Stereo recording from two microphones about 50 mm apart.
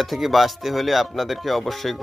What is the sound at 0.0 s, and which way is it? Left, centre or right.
Speech, centre.